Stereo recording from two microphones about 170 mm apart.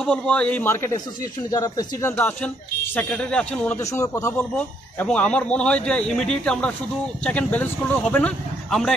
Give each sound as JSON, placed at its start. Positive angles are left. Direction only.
{"t": 0.0, "sound": "speech", "side_deg": 5}
{"t": 3.8, "sound": "speech", "side_deg": 20}